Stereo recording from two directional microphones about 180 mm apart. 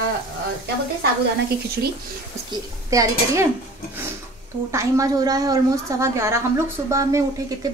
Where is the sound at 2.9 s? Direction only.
20° right (ahead or behind).